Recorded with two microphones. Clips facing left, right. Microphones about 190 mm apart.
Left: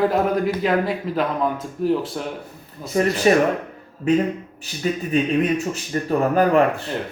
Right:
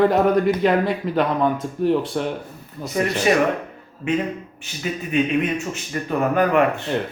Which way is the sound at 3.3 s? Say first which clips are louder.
Left 3 dB; 35° left (ahead or behind).